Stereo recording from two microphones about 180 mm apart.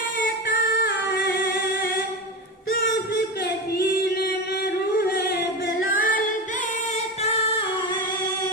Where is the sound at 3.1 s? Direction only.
60° left (ahead or behind).